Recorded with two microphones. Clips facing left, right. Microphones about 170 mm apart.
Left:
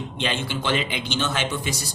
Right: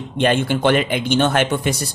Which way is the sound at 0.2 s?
55° right (ahead or behind).